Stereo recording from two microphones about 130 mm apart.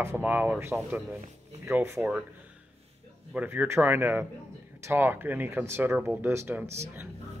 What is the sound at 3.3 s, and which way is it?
Speech, 15° right (ahead or behind).